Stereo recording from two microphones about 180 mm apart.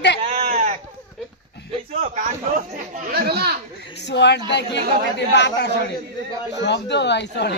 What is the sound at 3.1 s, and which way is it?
Speech, 60° right (ahead or behind).